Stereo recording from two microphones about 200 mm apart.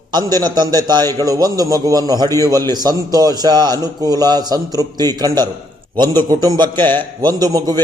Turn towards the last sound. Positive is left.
turn(degrees=-20)  # may be behind; listen again after turning